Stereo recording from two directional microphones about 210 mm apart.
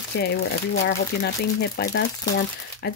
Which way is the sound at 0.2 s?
50° left (ahead or behind).